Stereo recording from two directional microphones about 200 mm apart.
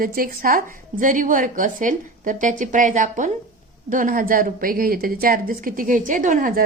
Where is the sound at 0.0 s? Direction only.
45° right (ahead or behind).